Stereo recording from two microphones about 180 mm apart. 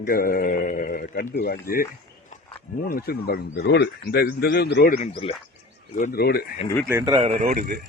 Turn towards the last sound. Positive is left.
turn(degrees=-55)  # may be behind; listen again after turning